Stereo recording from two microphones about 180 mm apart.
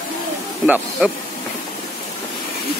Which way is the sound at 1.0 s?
5° right (ahead or behind).